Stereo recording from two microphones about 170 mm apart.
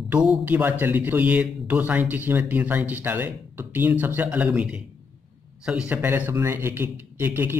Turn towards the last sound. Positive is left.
turn(degrees=-10)  # may be behind; listen again after turning